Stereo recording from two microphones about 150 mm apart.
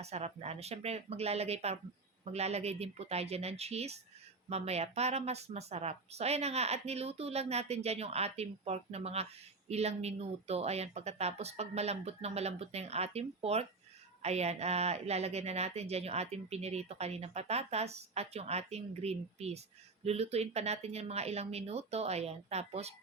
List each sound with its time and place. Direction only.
0.0 s speech: 45° right (ahead or behind)